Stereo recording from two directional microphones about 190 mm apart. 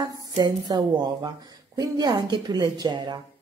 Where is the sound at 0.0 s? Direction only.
20° right (ahead or behind).